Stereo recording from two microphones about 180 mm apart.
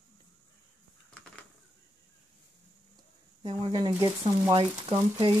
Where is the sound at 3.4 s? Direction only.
25° right (ahead or behind).